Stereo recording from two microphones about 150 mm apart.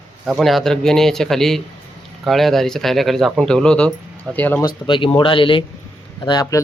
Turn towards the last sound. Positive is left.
turn(degrees=25)  # may be behind; listen again after turning